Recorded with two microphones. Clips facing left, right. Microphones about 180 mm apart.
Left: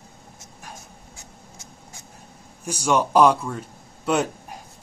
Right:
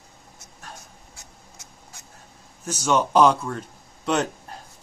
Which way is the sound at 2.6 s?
10° left (ahead or behind).